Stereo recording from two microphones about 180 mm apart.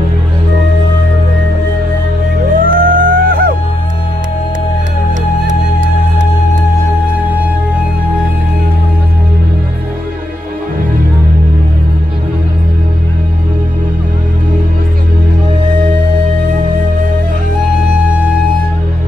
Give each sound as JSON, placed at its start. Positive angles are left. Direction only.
{"t": 2.6, "sound": "music", "side_deg": -50}
{"t": 7.2, "sound": "music", "side_deg": -10}